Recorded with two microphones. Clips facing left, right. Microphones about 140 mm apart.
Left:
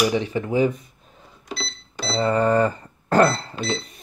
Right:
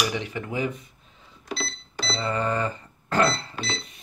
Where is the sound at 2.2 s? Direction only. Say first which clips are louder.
Left 8 dB; 40° left (ahead or behind).